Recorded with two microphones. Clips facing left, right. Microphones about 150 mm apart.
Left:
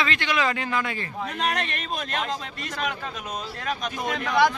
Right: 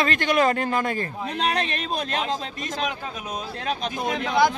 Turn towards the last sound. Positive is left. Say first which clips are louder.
# right 2 dB
turn(degrees=-25)  # may be behind; listen again after turning